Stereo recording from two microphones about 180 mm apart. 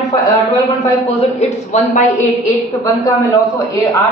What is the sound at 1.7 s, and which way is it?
Speech, 45° left (ahead or behind).